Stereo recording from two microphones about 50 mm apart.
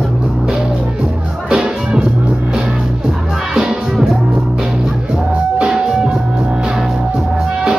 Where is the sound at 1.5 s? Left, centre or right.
Centre.